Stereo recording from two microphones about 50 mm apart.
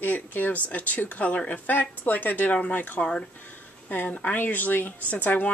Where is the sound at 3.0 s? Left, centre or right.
Centre.